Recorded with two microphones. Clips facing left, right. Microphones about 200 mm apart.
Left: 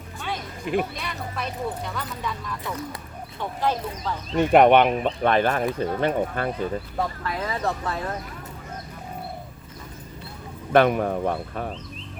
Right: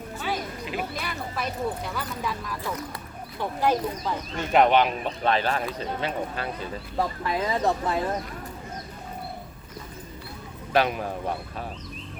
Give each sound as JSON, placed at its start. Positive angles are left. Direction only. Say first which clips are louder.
{"t": 0.8, "sound": "speech", "louder": "left 3 dB", "side_deg": 0}
{"t": 3.6, "sound": "speech", "louder": "right 2 dB", "side_deg": -10}
{"t": 4.4, "sound": "speech", "louder": "left 5 dB", "side_deg": 55}
{"t": 7.3, "sound": "speech", "louder": "right 2 dB", "side_deg": -20}
{"t": 10.7, "sound": "speech", "louder": "left 6 dB", "side_deg": 55}